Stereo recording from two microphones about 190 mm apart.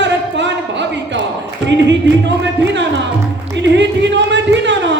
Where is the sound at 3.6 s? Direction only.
70° right (ahead or behind).